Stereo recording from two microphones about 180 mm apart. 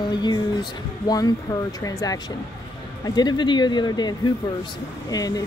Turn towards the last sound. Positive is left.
turn(degrees=20)  # may be behind; listen again after turning